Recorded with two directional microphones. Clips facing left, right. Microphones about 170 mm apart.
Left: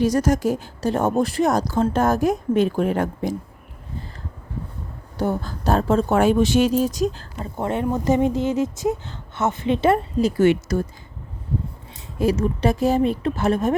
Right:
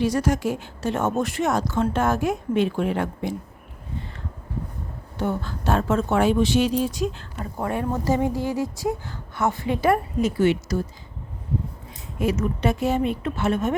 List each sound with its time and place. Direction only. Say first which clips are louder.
0.0 s speech: left 3 dB; 40° left (ahead or behind)
5.1 s speech: left 3 dB; 40° left (ahead or behind)
6.1 s speech: left 2 dB; 45° left (ahead or behind)
7.3 s speech: left 2 dB; 25° left (ahead or behind)
10.4 s speech: left 4 dB; 50° left (ahead or behind)
12.2 s speech: left 3 dB; 35° left (ahead or behind)